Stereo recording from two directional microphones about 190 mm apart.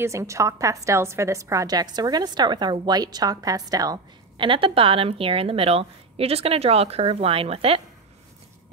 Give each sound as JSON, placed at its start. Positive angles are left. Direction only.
{"t": 0.0, "sound": "a woman's voice", "side_deg": -15}